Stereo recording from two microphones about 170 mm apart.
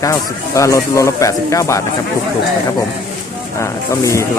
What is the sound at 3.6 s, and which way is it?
Speech, 15° left (ahead or behind).